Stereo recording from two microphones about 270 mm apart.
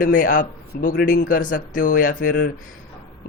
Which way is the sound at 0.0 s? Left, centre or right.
Left.